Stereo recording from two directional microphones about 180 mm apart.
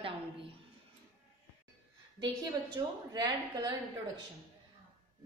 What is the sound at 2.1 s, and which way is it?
A woman's voice, 25° right (ahead or behind).